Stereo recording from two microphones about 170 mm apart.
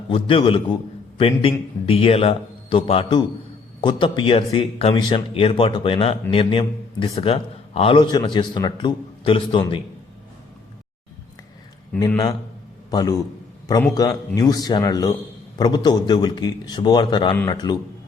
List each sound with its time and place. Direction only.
0.1 s a man's voice: 30° left (ahead or behind)
12.9 s a man's voice: 20° left (ahead or behind)